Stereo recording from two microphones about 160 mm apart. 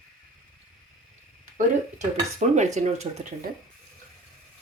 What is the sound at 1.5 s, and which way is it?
Speech, 45° right (ahead or behind).